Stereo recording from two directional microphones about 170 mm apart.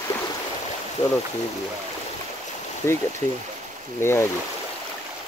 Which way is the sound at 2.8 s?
15° left (ahead or behind).